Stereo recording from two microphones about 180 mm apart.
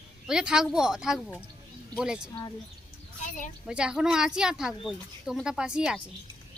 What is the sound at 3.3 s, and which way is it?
Speech, 45° left (ahead or behind).